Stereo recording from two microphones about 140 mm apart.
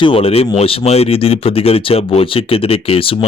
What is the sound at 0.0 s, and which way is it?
Speech, 40° left (ahead or behind).